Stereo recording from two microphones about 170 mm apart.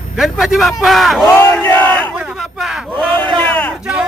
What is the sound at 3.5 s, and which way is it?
Battle cry, 10° left (ahead or behind).